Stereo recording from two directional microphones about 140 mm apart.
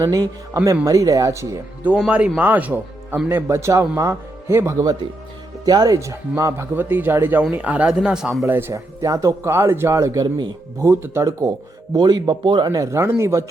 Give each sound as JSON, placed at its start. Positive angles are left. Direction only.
{"t": 0.0, "sound": "speech", "side_deg": -25}
{"t": 2.0, "sound": "speech", "side_deg": -5}
{"t": 8.4, "sound": "speech", "side_deg": -15}
{"t": 10.8, "sound": "speech", "side_deg": -20}